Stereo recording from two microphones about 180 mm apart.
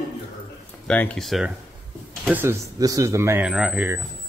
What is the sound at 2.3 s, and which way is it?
Speech, 10° right (ahead or behind).